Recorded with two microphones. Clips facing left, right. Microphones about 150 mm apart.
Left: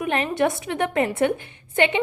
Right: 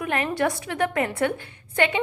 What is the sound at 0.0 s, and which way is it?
A woman's voice, 25° left (ahead or behind).